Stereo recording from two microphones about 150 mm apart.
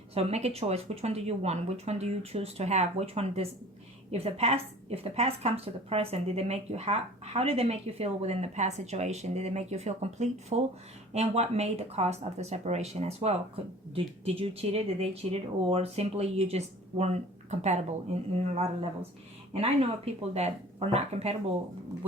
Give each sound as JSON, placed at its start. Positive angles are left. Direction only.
{"t": 0.1, "sound": "a woman's voice", "side_deg": -45}